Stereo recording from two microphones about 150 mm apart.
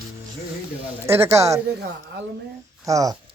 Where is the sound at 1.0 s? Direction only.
20° right (ahead or behind).